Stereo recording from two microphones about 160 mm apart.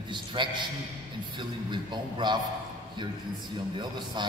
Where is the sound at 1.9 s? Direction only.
30° right (ahead or behind).